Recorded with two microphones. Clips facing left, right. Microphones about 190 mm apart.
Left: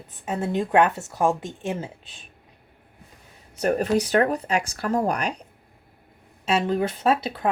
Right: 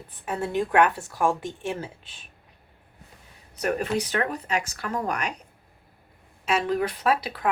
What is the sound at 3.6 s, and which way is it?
Speech, 35° left (ahead or behind).